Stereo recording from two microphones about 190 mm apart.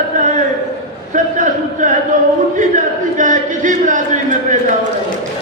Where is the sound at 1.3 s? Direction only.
40° right (ahead or behind).